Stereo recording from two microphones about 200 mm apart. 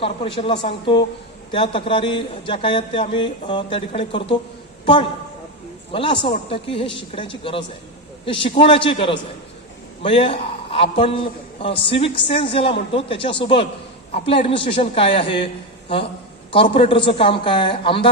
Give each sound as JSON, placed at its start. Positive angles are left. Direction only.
{"t": 0.0, "sound": "a man's voice", "side_deg": 25}
{"t": 5.9, "sound": "a man's voice", "side_deg": 25}
{"t": 16.5, "sound": "a man's voice", "side_deg": 25}